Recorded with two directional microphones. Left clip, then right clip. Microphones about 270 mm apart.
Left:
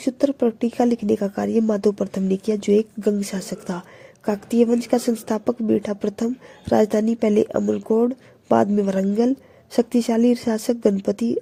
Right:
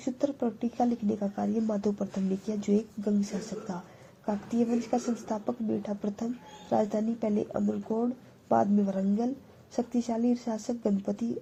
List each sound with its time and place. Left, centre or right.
0.0 s speech: left
4.3 s speech: left